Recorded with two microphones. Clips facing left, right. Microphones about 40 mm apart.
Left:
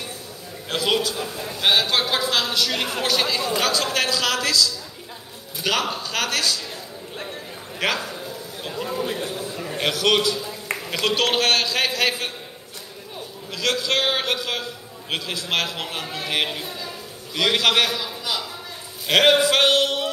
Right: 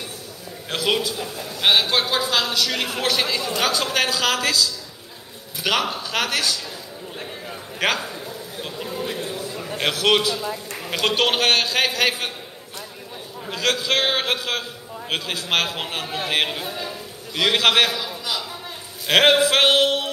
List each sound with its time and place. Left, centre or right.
0.7 s a man's voice: centre
1.3 s a man's voice: centre
1.6 s a man's voice: centre
2.2 s a woman's voice: centre
8.1 s a sound: centre
9.7 s a sound: centre
10.0 s a man's voice: centre
13.5 s a man's voice: centre
14.2 s a man's voice: centre
16.4 s a man's voice: centre
17.6 s a man's voice: right
17.9 s a man's voice: centre
19.0 s a man's voice: centre